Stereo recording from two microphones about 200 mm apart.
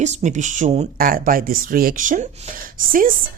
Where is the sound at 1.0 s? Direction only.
45° right (ahead or behind).